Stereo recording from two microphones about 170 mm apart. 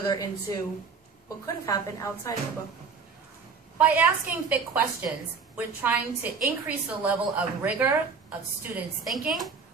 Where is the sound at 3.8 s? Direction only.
10° right (ahead or behind).